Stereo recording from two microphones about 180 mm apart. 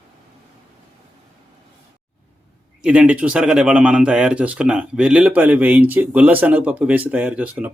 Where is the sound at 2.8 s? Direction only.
5° right (ahead or behind).